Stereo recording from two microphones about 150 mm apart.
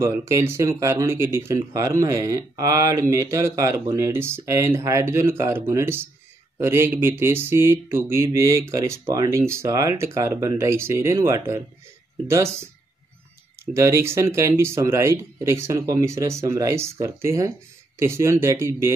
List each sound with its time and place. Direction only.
0.0 s speech: 20° right (ahead or behind)
13.7 s speech: 20° right (ahead or behind)